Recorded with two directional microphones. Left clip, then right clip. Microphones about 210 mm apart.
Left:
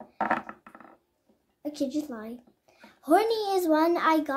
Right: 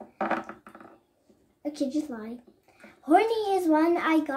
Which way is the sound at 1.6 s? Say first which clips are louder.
Right 1 dB; 15° left (ahead or behind).